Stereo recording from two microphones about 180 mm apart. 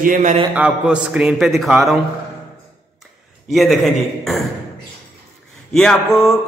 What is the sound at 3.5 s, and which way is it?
Music, centre (ahead or behind).